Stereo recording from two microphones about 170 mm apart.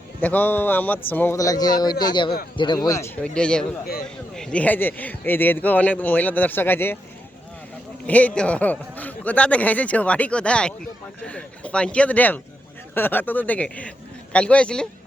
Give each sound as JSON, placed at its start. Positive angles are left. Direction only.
{"t": 0.2, "sound": "speech", "side_deg": 10}
{"t": 3.2, "sound": "speech", "side_deg": 5}
{"t": 8.0, "sound": "speech", "side_deg": 10}